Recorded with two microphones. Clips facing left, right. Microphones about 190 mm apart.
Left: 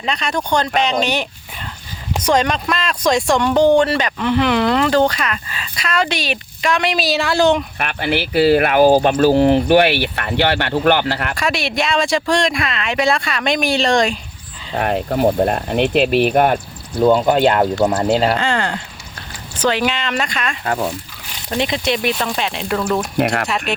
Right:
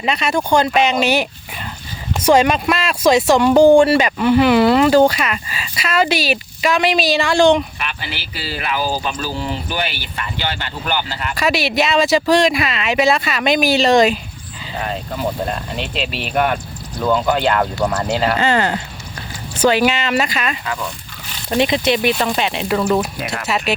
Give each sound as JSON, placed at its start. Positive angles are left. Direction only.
{"t": 0.0, "sound": "speech", "side_deg": -5}
{"t": 7.8, "sound": "speech", "side_deg": 55}
{"t": 11.3, "sound": "speech", "side_deg": 0}
{"t": 14.7, "sound": "speech", "side_deg": 60}
{"t": 17.0, "sound": "speech", "side_deg": 25}
{"t": 17.3, "sound": "speech", "side_deg": 40}
{"t": 18.3, "sound": "speech", "side_deg": -5}
{"t": 20.7, "sound": "speech", "side_deg": 35}
{"t": 21.6, "sound": "speech", "side_deg": 0}
{"t": 23.1, "sound": "speech", "side_deg": 60}
{"t": 23.5, "sound": "speech", "side_deg": -5}